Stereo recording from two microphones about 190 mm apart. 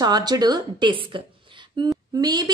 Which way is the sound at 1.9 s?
20° right (ahead or behind).